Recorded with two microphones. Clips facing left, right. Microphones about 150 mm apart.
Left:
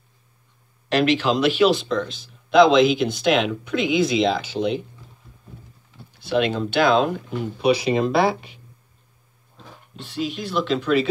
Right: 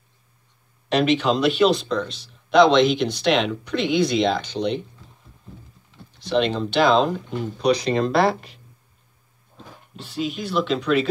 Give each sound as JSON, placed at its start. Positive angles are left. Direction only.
{"t": 0.8, "sound": "speech", "side_deg": 0}
{"t": 6.1, "sound": "speech", "side_deg": 5}
{"t": 9.9, "sound": "speech", "side_deg": 0}